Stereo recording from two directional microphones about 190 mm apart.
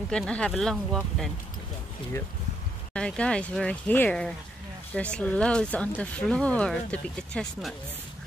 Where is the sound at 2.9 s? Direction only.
5° left (ahead or behind).